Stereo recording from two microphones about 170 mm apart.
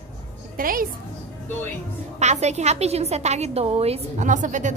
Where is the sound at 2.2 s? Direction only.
40° right (ahead or behind).